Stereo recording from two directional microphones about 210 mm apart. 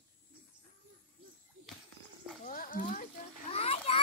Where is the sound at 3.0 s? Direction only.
30° left (ahead or behind).